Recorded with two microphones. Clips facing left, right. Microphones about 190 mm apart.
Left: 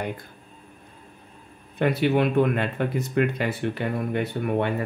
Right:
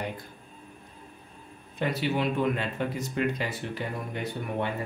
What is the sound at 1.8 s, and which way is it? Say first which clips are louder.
Speech: left 7 dB; 60° left (ahead or behind).